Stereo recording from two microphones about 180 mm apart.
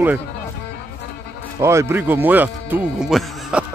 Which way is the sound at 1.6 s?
15° right (ahead or behind).